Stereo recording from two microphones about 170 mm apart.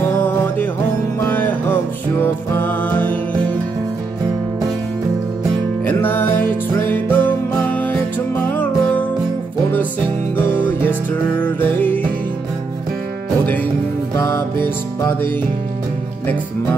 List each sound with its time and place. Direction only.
0.2 s music: 10° left (ahead or behind)
5.9 s music: 10° left (ahead or behind)
10.3 s music: 10° left (ahead or behind)
14.1 s music: 20° left (ahead or behind)